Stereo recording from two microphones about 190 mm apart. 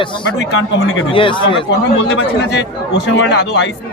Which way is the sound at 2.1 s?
65° left (ahead or behind).